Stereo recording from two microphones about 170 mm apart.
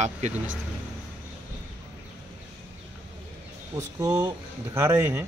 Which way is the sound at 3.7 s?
20° right (ahead or behind).